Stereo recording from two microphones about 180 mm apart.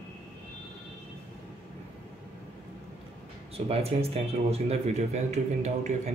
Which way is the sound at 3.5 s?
35° right (ahead or behind).